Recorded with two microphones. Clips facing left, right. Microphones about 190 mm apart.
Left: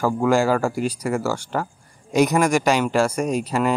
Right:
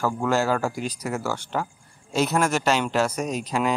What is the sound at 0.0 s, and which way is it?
Speech, 10° left (ahead or behind).